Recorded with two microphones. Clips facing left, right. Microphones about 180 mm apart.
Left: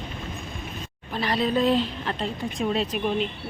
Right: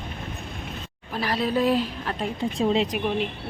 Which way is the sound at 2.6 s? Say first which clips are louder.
Right 3 dB; 20° right (ahead or behind).